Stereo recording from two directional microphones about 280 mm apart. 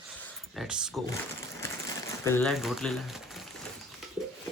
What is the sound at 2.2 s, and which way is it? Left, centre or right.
Speech, centre.